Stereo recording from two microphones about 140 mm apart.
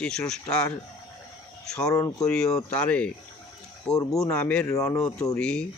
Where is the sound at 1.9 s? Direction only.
25° left (ahead or behind).